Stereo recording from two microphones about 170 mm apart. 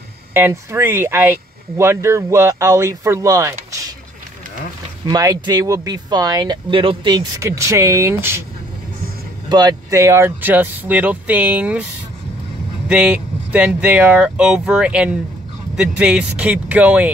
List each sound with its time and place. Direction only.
0.3 s speech: 15° right (ahead or behind)
5.0 s speech: 20° right (ahead or behind)
9.5 s speech: 25° right (ahead or behind); by 11.8 s 10° right (ahead or behind)
12.8 s vehicle: 10° right (ahead or behind)
13.7 s speech: 10° right (ahead or behind)